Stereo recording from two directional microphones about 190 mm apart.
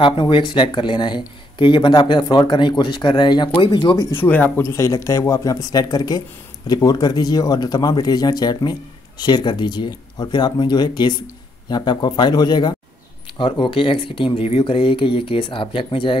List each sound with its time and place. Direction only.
0.0 s speech: 25° left (ahead or behind)
4.2 s speech: 10° left (ahead or behind); by 16.2 s 25° left (ahead or behind)